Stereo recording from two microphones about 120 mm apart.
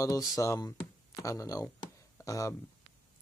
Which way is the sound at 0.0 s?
30° left (ahead or behind).